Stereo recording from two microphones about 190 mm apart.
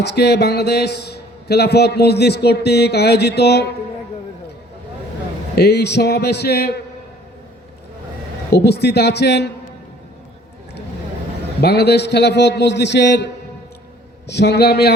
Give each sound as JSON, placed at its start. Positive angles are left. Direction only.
{"t": 0.0, "sound": "a man's voice", "side_deg": 60}
{"t": 5.5, "sound": "a man's voice", "side_deg": 60}
{"t": 8.5, "sound": "a man's voice", "side_deg": 60}
{"t": 11.6, "sound": "a man's voice", "side_deg": 60}